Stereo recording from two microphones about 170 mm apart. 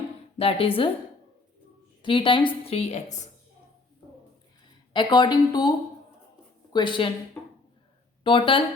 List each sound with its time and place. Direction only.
0.3 s a woman's voice: 35° left (ahead or behind)
2.0 s a woman's voice: 30° left (ahead or behind)
4.9 s speech: 25° left (ahead or behind)
6.7 s speech: 30° left (ahead or behind)
8.2 s speech: 30° left (ahead or behind)